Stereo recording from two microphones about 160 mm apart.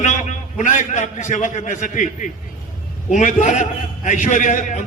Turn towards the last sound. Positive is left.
turn(degrees=50)  # may be behind; listen again after turning